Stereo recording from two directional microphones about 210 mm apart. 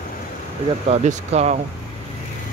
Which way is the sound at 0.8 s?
30° right (ahead or behind).